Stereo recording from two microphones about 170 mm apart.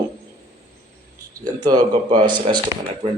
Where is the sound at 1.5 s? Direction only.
25° right (ahead or behind).